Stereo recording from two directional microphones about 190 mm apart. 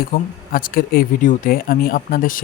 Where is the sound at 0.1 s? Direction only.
50° left (ahead or behind).